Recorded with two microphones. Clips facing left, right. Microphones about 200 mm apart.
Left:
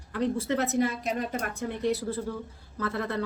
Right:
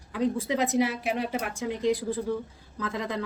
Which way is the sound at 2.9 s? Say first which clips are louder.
Even; 90° right.